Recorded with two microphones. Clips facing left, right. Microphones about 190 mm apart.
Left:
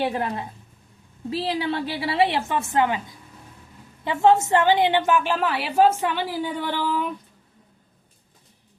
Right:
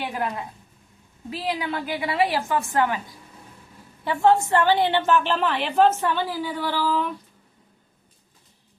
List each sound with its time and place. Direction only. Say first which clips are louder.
0.0 s a woman's voice: left 3 dB; 30° left (ahead or behind)